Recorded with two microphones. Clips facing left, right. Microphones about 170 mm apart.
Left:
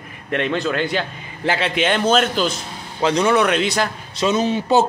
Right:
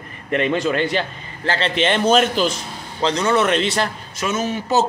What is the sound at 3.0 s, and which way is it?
Speech, 15° left (ahead or behind).